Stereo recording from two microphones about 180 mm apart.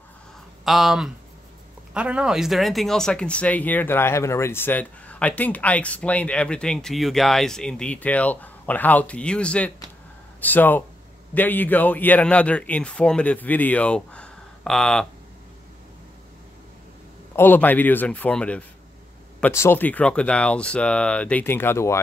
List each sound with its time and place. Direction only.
0.7 s speech: centre (ahead or behind)
17.4 s speech: 10° left (ahead or behind)